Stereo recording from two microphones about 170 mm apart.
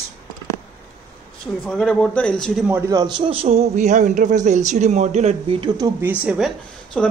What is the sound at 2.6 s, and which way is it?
Speech, 10° right (ahead or behind).